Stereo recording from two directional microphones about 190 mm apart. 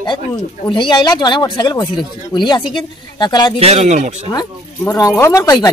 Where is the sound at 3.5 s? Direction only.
35° right (ahead or behind).